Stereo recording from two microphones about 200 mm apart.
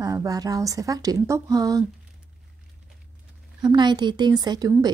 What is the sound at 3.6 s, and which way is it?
Speech, 20° right (ahead or behind).